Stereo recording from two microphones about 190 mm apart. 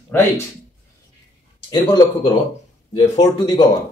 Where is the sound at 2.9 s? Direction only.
30° left (ahead or behind).